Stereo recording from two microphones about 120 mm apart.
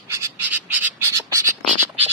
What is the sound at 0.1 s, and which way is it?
Bird, 15° right (ahead or behind).